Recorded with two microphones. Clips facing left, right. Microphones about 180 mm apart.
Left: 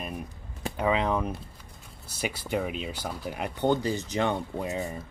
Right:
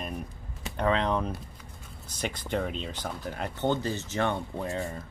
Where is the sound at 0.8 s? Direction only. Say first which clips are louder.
Even; 5° left (ahead or behind).